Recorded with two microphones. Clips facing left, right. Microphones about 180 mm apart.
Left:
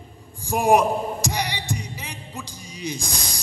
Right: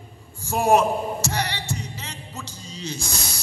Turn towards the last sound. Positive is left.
turn(degrees=15)  # may be behind; listen again after turning